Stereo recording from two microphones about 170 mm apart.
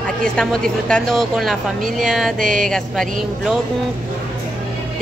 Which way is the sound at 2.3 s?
50° right (ahead or behind).